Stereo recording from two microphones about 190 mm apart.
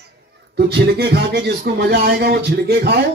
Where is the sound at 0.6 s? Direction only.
60° right (ahead or behind).